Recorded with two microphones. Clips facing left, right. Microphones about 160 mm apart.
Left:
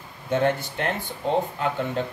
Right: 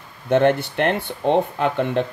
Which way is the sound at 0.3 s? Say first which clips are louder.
Right 6 dB; 65° right (ahead or behind).